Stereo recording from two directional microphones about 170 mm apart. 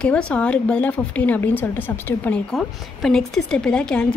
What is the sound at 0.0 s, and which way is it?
Speech, 5° left (ahead or behind).